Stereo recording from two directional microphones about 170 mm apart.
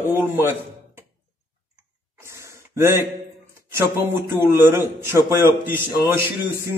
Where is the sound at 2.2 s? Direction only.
15° right (ahead or behind).